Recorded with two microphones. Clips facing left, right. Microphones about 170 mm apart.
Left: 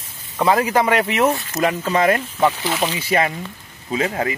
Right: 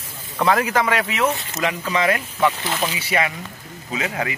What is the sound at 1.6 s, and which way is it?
Speech, 40° left (ahead or behind).